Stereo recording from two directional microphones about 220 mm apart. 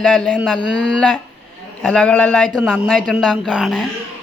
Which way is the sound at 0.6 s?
55° left (ahead or behind).